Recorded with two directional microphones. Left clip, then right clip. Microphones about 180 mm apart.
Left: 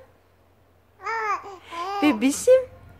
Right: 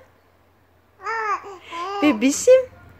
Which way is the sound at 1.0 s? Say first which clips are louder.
Right 2 dB; 10° left (ahead or behind).